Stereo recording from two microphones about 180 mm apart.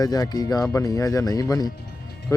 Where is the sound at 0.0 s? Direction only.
20° left (ahead or behind).